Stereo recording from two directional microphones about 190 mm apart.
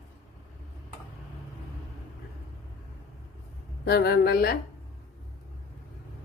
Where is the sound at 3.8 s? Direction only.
55° left (ahead or behind).